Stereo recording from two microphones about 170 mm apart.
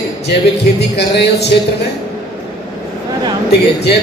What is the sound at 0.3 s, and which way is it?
Speech, 80° left.